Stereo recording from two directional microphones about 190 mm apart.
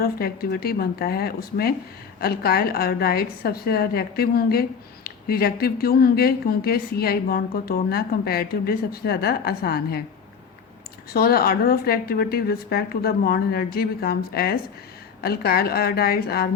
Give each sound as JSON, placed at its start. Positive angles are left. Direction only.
{"t": 0.0, "sound": "speech", "side_deg": 50}
{"t": 11.1, "sound": "speech", "side_deg": 55}